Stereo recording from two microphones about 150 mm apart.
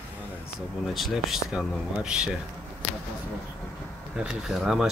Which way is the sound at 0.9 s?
Centre (ahead or behind).